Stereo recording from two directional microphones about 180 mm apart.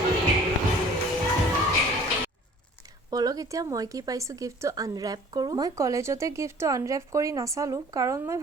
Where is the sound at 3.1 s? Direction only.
20° right (ahead or behind).